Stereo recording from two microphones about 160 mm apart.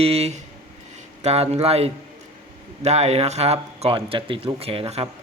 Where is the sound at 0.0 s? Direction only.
40° right (ahead or behind).